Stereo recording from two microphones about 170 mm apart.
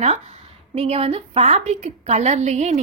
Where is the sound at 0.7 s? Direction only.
35° right (ahead or behind).